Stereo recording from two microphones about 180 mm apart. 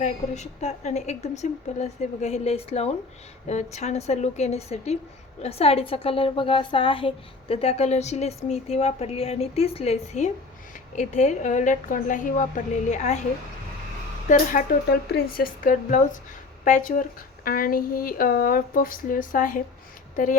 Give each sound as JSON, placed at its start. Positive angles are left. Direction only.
{"t": 0.0, "sound": "a woman's voice", "side_deg": 40}
{"t": 14.3, "sound": "a woman's voice", "side_deg": 50}